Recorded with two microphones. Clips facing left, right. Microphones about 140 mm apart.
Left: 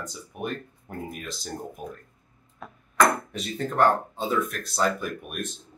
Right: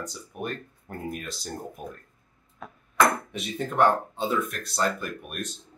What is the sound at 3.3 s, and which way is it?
Speech, 5° right (ahead or behind).